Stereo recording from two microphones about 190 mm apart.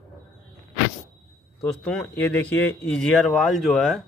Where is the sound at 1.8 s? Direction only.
5° left (ahead or behind).